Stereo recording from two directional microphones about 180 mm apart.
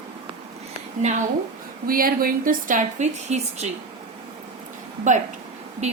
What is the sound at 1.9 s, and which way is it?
A woman's voice, 50° right (ahead or behind).